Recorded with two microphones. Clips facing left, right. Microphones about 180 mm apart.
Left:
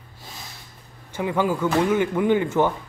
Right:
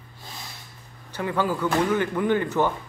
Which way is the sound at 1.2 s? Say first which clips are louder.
Left 3 dB; 15° left (ahead or behind).